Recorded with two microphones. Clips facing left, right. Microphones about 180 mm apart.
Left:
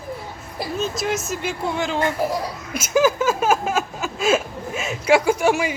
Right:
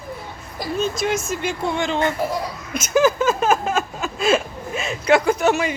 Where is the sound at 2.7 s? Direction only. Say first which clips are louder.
Right 1 dB; 10° left (ahead or behind).